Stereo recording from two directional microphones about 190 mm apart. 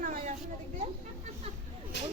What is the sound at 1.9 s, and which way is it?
Snake, 65° left (ahead or behind).